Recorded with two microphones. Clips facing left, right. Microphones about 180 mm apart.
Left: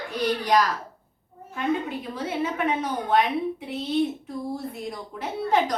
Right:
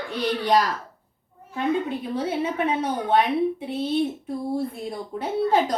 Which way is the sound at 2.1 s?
30° right (ahead or behind).